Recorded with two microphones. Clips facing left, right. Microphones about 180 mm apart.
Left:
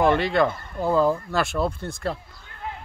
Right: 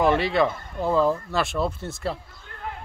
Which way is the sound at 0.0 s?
Centre (ahead or behind).